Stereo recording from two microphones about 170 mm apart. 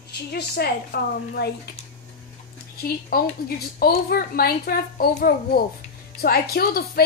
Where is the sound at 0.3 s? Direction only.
70° left (ahead or behind).